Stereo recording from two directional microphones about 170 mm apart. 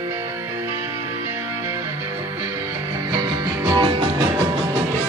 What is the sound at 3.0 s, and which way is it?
Music, 25° right (ahead or behind).